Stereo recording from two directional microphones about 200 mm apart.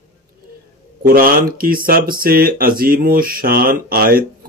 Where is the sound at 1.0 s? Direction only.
45° right (ahead or behind).